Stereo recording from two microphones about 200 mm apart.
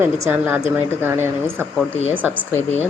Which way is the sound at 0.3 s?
10° right (ahead or behind).